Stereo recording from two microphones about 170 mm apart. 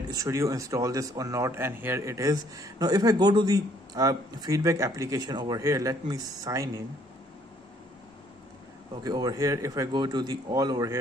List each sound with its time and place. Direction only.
0.1 s a man's voice: 20° right (ahead or behind)
9.0 s a man's voice: 25° right (ahead or behind)